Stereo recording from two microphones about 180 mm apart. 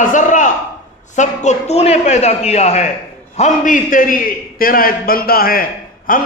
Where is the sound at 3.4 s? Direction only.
45° left (ahead or behind).